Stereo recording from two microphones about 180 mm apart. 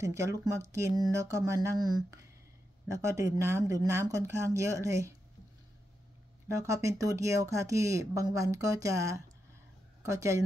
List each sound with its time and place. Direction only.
0.0 s speech: 15° right (ahead or behind)
6.5 s speech: 15° right (ahead or behind)